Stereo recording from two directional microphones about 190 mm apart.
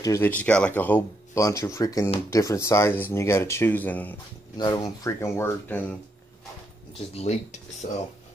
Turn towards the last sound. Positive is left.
turn(degrees=35)  # may be behind; listen again after turning